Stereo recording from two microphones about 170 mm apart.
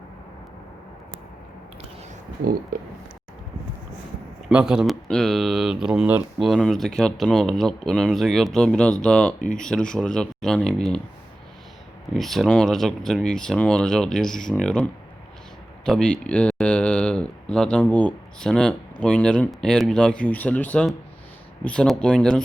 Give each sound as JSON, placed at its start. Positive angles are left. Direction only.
{"t": 2.7, "sound": "speech", "side_deg": -50}
{"t": 4.4, "sound": "speech", "side_deg": -5}
{"t": 12.1, "sound": "speech", "side_deg": 0}